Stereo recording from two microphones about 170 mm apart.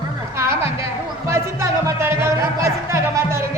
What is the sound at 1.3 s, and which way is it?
Music, 15° right (ahead or behind).